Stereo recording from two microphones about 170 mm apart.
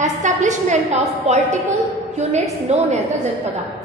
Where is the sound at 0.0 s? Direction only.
45° right (ahead or behind).